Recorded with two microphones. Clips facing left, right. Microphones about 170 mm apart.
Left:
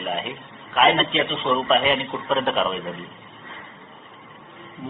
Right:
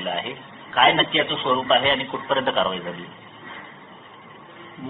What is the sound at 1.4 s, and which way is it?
A man's voice, centre (ahead or behind).